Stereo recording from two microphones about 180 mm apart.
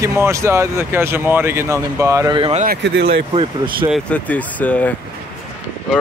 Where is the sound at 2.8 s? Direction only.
80° right.